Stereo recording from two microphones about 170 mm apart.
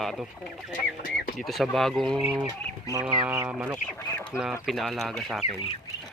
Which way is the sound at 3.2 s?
15° right (ahead or behind).